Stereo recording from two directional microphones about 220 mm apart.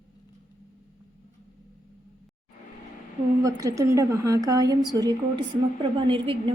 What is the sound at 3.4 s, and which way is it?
A woman's voice, 15° right (ahead or behind).